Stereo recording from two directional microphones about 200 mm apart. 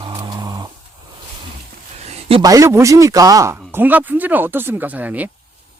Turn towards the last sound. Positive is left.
turn(degrees=-10)  # may be behind; listen again after turning